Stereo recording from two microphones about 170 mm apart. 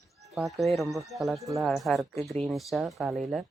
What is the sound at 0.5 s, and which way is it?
Speech, centre (ahead or behind).